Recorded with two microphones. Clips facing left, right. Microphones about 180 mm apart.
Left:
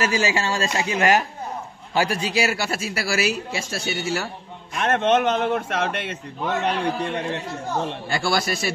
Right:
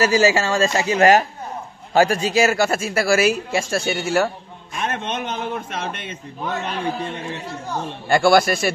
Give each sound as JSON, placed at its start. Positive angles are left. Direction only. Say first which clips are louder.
{"t": 0.0, "sound": "speech", "louder": "right 6 dB", "side_deg": -40}
{"t": 4.7, "sound": "a man's voice", "louder": "left 6 dB", "side_deg": 70}
{"t": 8.1, "sound": "speech", "louder": "right 10 dB", "side_deg": -55}